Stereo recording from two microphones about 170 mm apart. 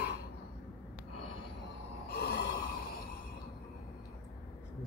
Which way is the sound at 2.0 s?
70° left (ahead or behind).